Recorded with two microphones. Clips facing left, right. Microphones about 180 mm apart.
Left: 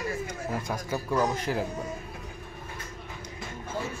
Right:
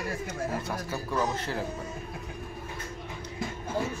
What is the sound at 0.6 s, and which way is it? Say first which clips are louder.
Speech: left 2 dB; 15° left (ahead or behind).